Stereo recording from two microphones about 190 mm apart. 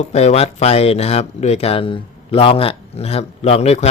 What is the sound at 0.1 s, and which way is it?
Speech, 35° left (ahead or behind).